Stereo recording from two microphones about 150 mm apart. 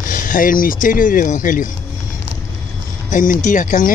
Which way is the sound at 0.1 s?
65° left (ahead or behind).